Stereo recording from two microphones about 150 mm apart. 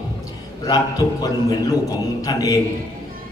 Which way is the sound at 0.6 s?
25° left (ahead or behind).